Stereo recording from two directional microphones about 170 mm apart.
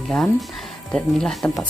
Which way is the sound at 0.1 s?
Centre (ahead or behind).